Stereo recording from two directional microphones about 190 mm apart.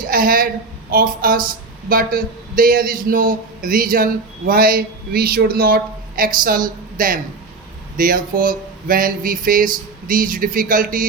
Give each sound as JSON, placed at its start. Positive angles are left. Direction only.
{"t": 0.1, "sound": "a woman's voice", "side_deg": -50}